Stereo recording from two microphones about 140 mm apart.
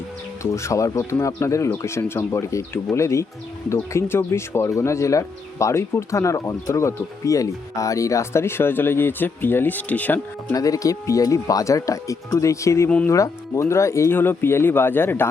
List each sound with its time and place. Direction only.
0.5 s speech: 20° left (ahead or behind)
10.5 s speech: 25° left (ahead or behind)